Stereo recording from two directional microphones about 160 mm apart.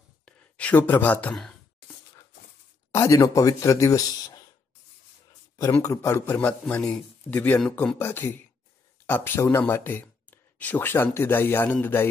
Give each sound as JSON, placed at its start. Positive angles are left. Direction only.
{"t": 0.2, "sound": "a sound", "side_deg": 10}
{"t": 2.9, "sound": "speech", "side_deg": 15}
{"t": 5.8, "sound": "speech", "side_deg": 20}